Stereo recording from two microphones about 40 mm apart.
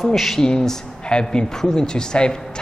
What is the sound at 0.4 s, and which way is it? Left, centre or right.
A woman's voice, centre.